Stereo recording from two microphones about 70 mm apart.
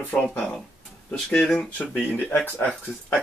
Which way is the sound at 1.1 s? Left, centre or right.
Centre.